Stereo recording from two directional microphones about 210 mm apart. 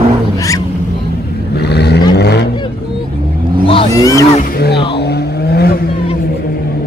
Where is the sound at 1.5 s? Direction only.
50° left (ahead or behind).